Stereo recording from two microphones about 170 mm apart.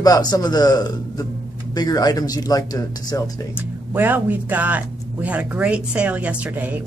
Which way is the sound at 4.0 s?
10° right (ahead or behind).